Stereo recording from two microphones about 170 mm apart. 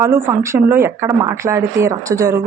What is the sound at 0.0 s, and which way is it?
Speech, 15° right (ahead or behind).